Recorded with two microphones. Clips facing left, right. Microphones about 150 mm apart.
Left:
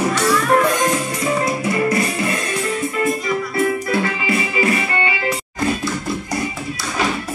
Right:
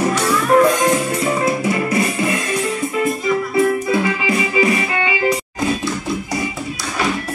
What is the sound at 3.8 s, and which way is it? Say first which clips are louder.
Music: right 2 dB; 15° right (ahead or behind).